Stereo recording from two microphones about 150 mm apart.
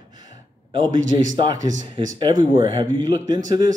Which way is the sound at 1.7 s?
55° right (ahead or behind).